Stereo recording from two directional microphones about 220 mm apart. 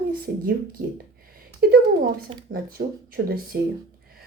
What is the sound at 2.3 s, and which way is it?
Speech, 25° right (ahead or behind).